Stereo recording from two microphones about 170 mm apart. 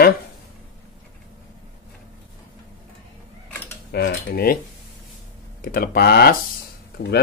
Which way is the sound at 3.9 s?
70° left (ahead or behind).